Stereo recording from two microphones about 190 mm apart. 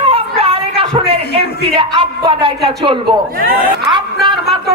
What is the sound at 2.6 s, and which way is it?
Speech, 25° right (ahead or behind).